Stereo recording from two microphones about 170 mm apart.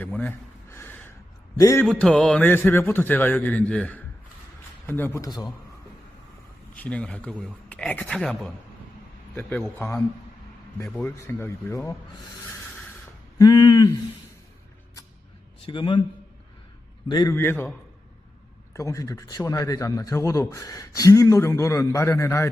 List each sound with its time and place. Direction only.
0.0 s a sound: 10° left (ahead or behind)
1.5 s a man's voice: 20° left (ahead or behind)
1.9 s a man's voice: 5° left (ahead or behind); by 5.5 s 20° left (ahead or behind)
6.7 s a man's voice: 10° left (ahead or behind)
11.0 s a man's voice: 15° left (ahead or behind)
13.4 s a man's voice: 25° left (ahead or behind)
15.6 s a man's voice: 30° left (ahead or behind)
17.1 s a man's voice: 25° left (ahead or behind)
17.3 s a man's voice: 15° left (ahead or behind)
18.7 s a man's voice: 20° left (ahead or behind)